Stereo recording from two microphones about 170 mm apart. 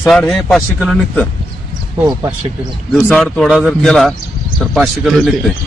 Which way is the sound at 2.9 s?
5° left (ahead or behind).